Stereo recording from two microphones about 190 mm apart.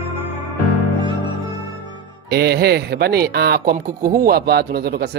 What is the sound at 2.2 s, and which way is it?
Speech, 55° right (ahead or behind).